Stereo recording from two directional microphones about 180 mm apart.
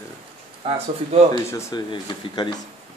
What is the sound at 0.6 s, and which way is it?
Speech, 35° right (ahead or behind).